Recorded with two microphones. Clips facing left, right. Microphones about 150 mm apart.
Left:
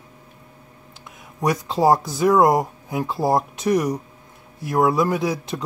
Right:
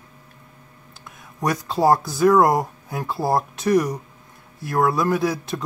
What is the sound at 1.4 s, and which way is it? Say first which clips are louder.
Speech: left 1 dB; 15° left (ahead or behind).